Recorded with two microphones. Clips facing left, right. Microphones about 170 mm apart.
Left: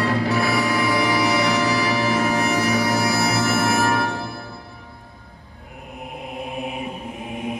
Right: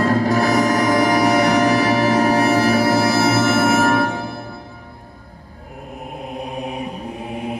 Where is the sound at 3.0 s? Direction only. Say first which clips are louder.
Right 5 dB; 25° right (ahead or behind).